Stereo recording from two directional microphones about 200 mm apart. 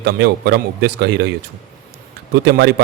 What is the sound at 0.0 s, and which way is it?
A man's voice, 55° right (ahead or behind).